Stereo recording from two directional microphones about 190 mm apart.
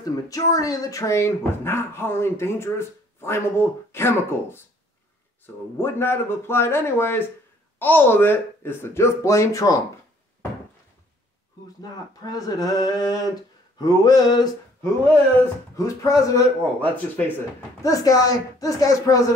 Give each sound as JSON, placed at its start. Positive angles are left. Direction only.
{"t": 0.3, "sound": "speech", "side_deg": 20}
{"t": 5.8, "sound": "speech", "side_deg": 10}
{"t": 11.8, "sound": "speech", "side_deg": 20}
{"t": 15.7, "sound": "speech", "side_deg": 15}